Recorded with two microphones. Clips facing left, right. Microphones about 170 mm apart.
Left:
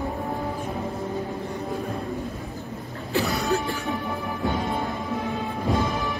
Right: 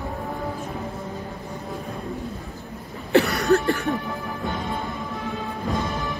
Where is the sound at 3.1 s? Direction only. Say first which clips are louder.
Right 6 dB; 65° right (ahead or behind).